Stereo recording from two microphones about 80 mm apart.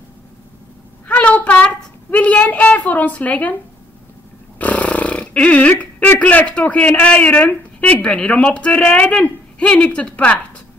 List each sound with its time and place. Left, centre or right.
1.0 s a sound: centre
4.6 s dog: centre
6.1 s speech: centre